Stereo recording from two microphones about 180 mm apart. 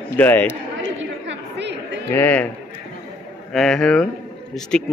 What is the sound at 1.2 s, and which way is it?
Chatter, 75° right (ahead or behind).